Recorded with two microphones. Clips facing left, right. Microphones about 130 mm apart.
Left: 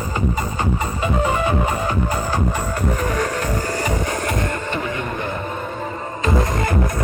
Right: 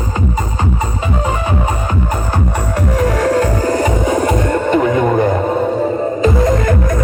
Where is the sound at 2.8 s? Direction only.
85° right.